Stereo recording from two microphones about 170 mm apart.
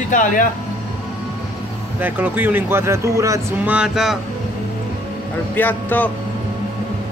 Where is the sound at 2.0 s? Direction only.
10° right (ahead or behind).